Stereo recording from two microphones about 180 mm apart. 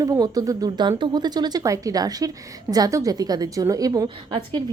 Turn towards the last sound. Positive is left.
turn(degrees=-25)  # may be behind; listen again after turning